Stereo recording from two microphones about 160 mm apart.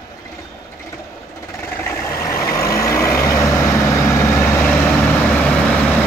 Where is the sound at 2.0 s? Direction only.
20° left (ahead or behind).